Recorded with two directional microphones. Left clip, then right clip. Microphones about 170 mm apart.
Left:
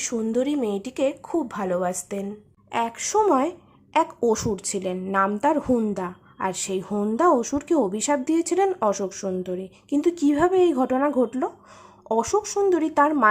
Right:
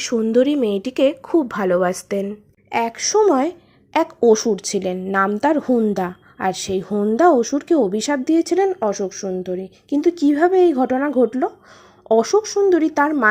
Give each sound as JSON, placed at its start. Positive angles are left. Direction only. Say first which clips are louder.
{"t": 0.0, "sound": "a woman's voice", "louder": "right 8 dB", "side_deg": -20}
{"t": 5.9, "sound": "a woman's voice", "louder": "right 7 dB", "side_deg": -25}
{"t": 6.5, "sound": "a woman's voice", "louder": "right 6 dB", "side_deg": -15}